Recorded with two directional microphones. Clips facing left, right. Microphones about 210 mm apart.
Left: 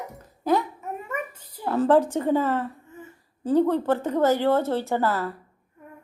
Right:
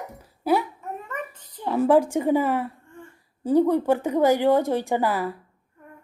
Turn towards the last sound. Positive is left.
turn(degrees=-15)  # may be behind; listen again after turning